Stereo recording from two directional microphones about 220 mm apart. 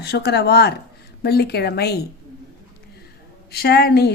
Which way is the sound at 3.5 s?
45° left (ahead or behind).